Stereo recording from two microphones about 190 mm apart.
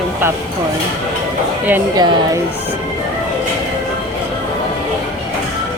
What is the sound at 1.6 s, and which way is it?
Speech, 10° right (ahead or behind).